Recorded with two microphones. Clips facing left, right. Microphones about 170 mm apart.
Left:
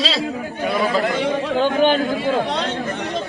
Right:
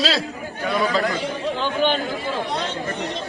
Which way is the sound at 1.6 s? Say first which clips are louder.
Left 5 dB; 45° left (ahead or behind).